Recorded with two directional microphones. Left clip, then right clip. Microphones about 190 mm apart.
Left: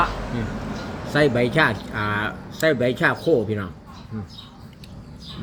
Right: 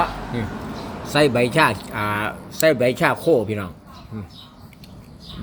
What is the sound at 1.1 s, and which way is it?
Speech, 35° right (ahead or behind).